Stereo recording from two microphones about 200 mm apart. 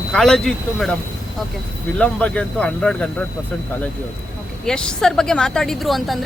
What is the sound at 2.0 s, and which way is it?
Speech, 5° left (ahead or behind).